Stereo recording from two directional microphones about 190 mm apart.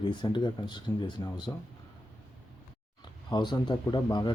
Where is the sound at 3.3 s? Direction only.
25° left (ahead or behind).